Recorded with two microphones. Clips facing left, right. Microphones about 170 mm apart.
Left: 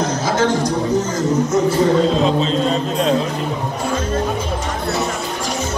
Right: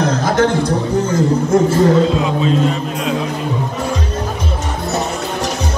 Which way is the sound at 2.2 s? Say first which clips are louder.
Right 1 dB; 30° left (ahead or behind).